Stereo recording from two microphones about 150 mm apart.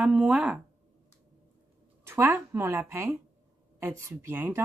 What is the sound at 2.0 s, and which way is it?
A woman's voice, 15° right (ahead or behind).